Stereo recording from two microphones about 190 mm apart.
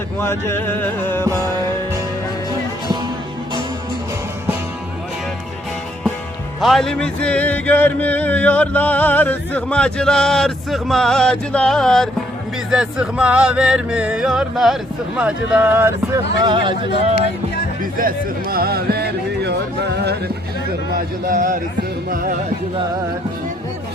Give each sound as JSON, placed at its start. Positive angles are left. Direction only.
{"t": 0.2, "sound": "music", "side_deg": 15}
{"t": 6.6, "sound": "music", "side_deg": 0}
{"t": 16.4, "sound": "speech", "side_deg": -25}
{"t": 18.5, "sound": "music", "side_deg": -55}
{"t": 20.9, "sound": "a man's voice", "side_deg": -45}